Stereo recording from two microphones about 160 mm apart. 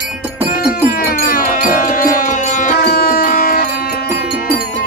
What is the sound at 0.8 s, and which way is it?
Music, 65° left (ahead or behind).